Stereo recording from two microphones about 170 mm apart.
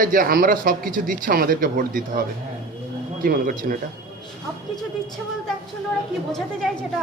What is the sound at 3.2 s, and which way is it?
Speech, 60° right (ahead or behind).